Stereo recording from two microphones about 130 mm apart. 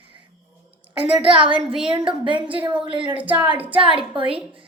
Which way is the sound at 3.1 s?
10° right (ahead or behind).